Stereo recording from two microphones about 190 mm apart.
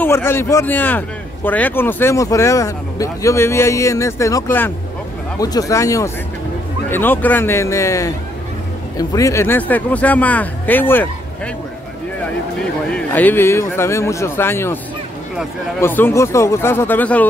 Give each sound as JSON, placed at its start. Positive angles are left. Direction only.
{"t": 0.0, "sound": "speech", "side_deg": 10}
{"t": 12.9, "sound": "speech", "side_deg": 10}
{"t": 15.8, "sound": "speech", "side_deg": 10}